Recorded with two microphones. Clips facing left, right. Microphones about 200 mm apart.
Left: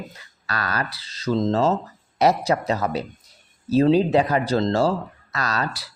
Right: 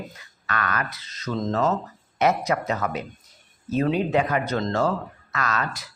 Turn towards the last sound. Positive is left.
turn(degrees=35)  # may be behind; listen again after turning